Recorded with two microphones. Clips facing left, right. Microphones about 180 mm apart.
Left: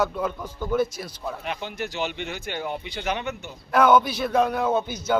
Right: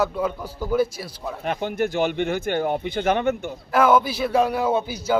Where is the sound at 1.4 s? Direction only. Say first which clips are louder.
Right 11 dB; 50° right (ahead or behind).